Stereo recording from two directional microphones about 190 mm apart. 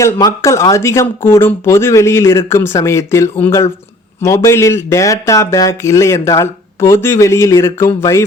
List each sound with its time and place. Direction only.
0.0 s speech: 15° left (ahead or behind)